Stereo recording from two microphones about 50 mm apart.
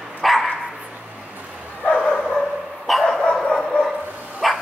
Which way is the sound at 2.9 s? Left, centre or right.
Centre.